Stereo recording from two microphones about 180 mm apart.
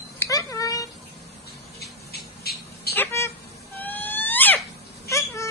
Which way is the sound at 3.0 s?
15° left (ahead or behind).